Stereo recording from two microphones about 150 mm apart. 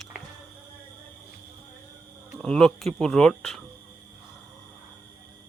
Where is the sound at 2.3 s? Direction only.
5° left (ahead or behind).